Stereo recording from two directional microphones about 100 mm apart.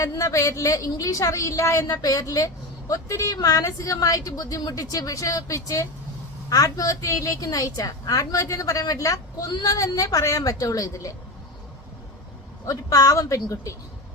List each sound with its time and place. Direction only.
0.2 s a woman's voice: 35° left (ahead or behind)
12.6 s a woman's voice: 35° left (ahead or behind)